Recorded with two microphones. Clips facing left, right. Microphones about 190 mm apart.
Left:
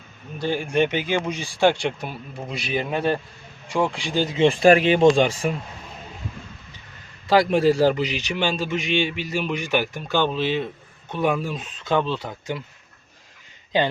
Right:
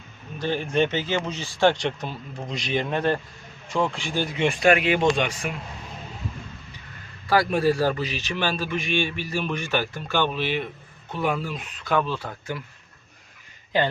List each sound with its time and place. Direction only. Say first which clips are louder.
0.3 s speech: left 2 dB; 10° left (ahead or behind)
4.4 s speech: left 5 dB; 30° left (ahead or behind)
7.3 s a man's voice: left 3 dB; 20° left (ahead or behind)